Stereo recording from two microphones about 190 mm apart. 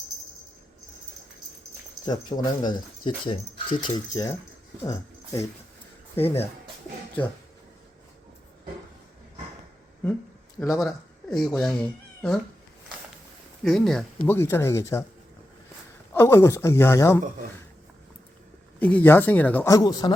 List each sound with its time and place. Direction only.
2.0 s speech: 20° left (ahead or behind)
6.1 s speech: 30° left (ahead or behind)
10.8 s speech: centre (ahead or behind)
13.7 s speech: centre (ahead or behind)
14.3 s speech: 10° left (ahead or behind)
16.1 s speech: 15° left (ahead or behind)
18.8 s speech: 10° left (ahead or behind)